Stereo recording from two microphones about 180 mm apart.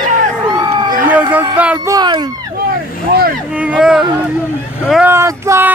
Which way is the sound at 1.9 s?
25° right (ahead or behind).